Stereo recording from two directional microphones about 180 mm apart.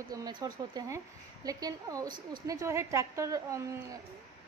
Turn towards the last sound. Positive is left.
turn(degrees=-15)  # may be behind; listen again after turning